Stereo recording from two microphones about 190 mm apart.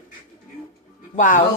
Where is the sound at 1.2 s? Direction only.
45° left (ahead or behind).